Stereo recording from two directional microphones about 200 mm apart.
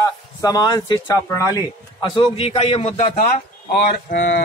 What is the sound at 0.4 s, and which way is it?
Speech, 20° left (ahead or behind).